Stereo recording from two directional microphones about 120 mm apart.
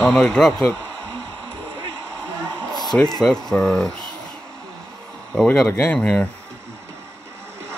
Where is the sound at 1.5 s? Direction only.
45° right (ahead or behind).